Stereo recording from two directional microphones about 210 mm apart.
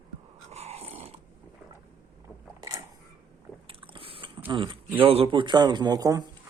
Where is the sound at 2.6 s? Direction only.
15° right (ahead or behind).